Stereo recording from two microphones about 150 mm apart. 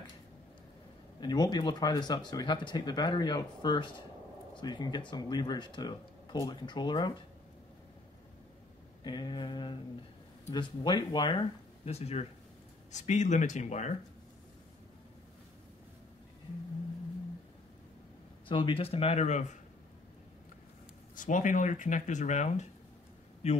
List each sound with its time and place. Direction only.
1.2 s speech: 30° left (ahead or behind)
9.0 s speech: 30° left (ahead or behind); by 13.9 s 50° left (ahead or behind)
18.5 s speech: 35° left (ahead or behind); by 19.6 s 50° left (ahead or behind)
21.1 s speech: 60° left (ahead or behind)